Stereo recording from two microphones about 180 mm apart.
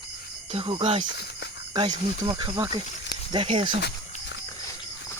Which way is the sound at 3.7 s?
75° left (ahead or behind).